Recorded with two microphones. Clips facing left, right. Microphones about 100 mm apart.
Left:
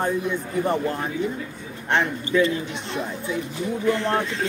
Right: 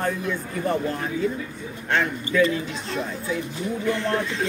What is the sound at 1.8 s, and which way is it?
Speech, 25° left (ahead or behind).